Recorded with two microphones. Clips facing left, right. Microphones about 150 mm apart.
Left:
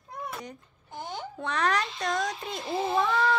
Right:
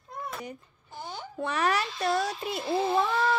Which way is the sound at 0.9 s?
20° left (ahead or behind).